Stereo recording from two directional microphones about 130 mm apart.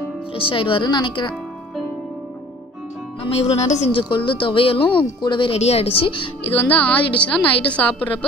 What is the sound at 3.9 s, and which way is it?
Speech, 40° left (ahead or behind).